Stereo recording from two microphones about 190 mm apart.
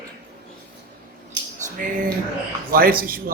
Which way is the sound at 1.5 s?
40° right (ahead or behind).